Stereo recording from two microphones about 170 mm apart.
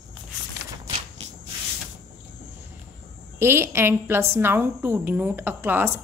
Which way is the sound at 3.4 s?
15° right (ahead or behind).